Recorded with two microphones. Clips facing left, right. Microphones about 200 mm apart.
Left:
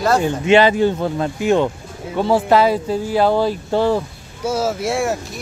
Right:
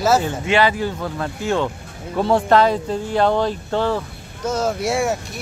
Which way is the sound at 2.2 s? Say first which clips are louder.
Left 1 dB; 5° left (ahead or behind).